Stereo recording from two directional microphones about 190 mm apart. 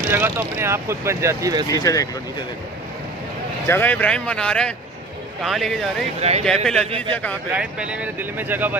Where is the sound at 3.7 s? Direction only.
10° left (ahead or behind).